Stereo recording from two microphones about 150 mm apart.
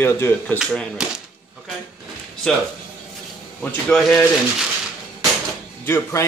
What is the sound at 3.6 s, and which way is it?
Speech, 5° left (ahead or behind).